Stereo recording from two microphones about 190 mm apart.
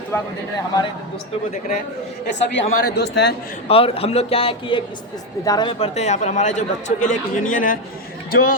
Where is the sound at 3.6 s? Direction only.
30° left (ahead or behind).